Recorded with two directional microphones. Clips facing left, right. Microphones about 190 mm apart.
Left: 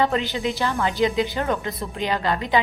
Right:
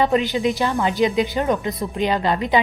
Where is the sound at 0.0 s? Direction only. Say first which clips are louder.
Right 4 dB; 15° right (ahead or behind).